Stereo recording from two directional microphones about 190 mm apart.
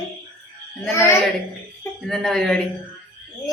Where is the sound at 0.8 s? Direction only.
15° left (ahead or behind).